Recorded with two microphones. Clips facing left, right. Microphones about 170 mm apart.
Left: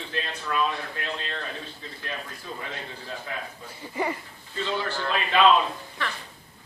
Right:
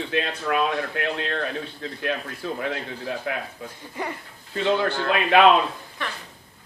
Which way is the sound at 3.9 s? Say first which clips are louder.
Left 3 dB; 5° left (ahead or behind).